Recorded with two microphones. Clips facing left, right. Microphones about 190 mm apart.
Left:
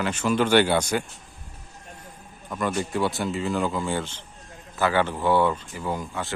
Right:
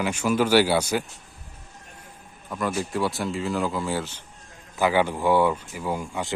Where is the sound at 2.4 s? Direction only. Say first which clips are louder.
Left 1 dB; centre (ahead or behind).